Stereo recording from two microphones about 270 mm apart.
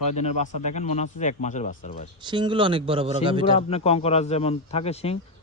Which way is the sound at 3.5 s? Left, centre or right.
Left.